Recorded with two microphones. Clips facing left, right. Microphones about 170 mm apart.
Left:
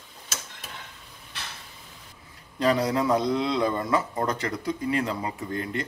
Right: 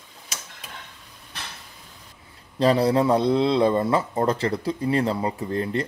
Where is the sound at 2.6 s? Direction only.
30° right (ahead or behind).